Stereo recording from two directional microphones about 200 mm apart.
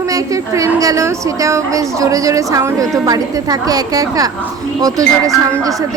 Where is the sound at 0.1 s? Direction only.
15° right (ahead or behind).